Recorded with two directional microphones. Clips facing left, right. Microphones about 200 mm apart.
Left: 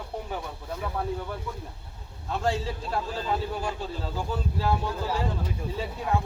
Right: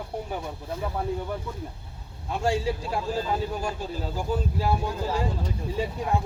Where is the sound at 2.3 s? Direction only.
10° right (ahead or behind).